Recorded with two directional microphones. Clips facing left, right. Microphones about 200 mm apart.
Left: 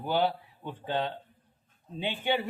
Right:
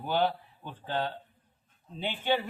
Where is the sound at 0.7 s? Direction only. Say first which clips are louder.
Left 1 dB; 15° left (ahead or behind).